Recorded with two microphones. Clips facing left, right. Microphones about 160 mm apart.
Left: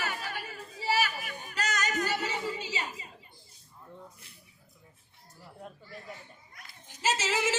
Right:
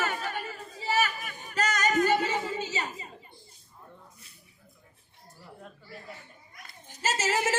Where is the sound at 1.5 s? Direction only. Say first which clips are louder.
Right 6 dB; 50° right (ahead or behind).